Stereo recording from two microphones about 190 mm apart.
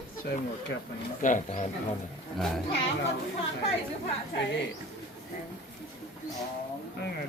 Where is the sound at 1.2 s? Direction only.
40° left (ahead or behind).